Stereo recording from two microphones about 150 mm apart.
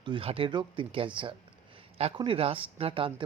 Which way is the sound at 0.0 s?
35° right (ahead or behind).